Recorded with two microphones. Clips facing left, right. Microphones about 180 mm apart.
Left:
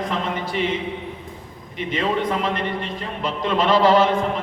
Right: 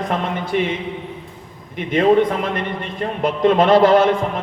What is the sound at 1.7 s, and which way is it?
A man's voice, 55° right (ahead or behind).